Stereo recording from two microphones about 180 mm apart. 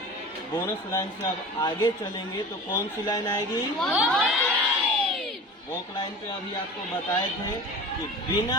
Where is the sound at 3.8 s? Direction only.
5° right (ahead or behind).